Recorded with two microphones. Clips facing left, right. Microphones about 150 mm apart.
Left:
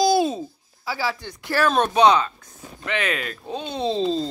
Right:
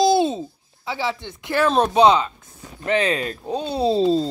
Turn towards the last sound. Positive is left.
turn(degrees=-5)  # may be behind; listen again after turning